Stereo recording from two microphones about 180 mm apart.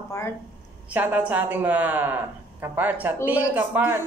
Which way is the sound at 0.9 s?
10° right (ahead or behind).